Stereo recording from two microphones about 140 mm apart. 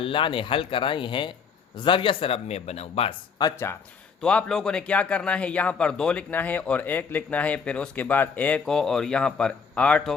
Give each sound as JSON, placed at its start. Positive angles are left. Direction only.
{"t": 0.0, "sound": "speech", "side_deg": 35}
{"t": 4.2, "sound": "speech", "side_deg": 5}